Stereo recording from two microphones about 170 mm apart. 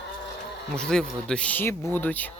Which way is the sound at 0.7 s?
5° left (ahead or behind).